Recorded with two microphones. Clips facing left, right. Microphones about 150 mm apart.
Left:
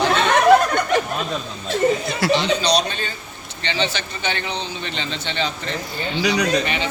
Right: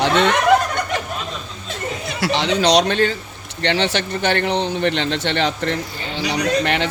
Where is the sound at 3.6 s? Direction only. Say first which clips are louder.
Right 5 dB; 70° right (ahead or behind).